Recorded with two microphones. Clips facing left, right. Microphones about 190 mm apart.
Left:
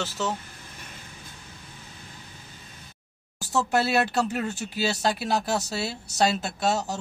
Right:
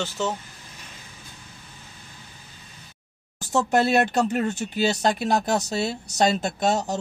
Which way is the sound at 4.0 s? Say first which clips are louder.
Right 3 dB; 50° right (ahead or behind).